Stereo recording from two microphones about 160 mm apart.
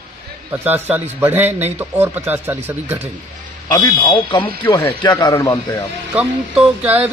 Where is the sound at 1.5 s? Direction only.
40° right (ahead or behind).